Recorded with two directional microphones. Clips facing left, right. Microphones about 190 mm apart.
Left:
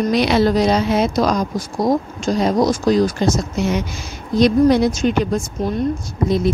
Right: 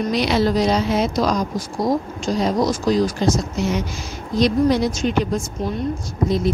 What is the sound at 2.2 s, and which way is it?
Speech, 45° left (ahead or behind).